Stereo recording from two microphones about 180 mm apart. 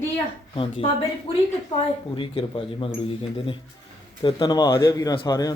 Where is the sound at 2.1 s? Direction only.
30° left (ahead or behind).